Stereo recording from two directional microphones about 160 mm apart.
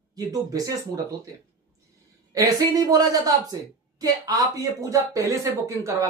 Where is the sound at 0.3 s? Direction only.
20° right (ahead or behind).